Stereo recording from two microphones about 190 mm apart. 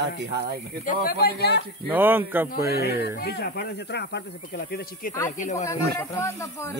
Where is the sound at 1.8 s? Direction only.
10° right (ahead or behind).